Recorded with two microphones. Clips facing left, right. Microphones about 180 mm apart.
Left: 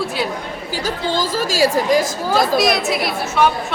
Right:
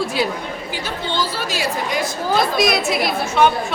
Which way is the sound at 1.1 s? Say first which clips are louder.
Left 5 dB; 40° left (ahead or behind).